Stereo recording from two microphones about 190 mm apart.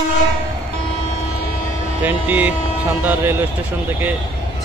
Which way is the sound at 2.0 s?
10° right (ahead or behind).